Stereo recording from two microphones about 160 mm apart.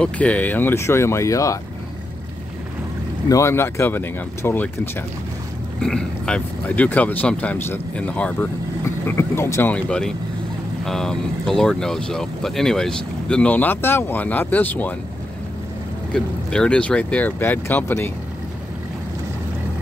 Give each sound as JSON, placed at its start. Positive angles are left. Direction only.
{"t": 0.0, "sound": "speech", "side_deg": 10}
{"t": 3.3, "sound": "speech", "side_deg": 20}
{"t": 5.8, "sound": "speech", "side_deg": 5}
{"t": 16.1, "sound": "speech", "side_deg": 5}